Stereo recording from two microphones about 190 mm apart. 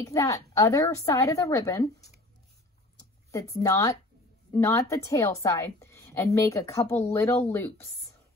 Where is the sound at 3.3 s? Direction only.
15° left (ahead or behind).